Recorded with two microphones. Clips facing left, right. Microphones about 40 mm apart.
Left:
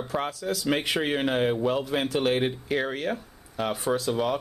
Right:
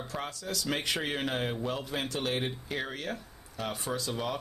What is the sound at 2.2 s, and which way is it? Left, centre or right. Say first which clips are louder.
A man's voice: left 8 dB; left.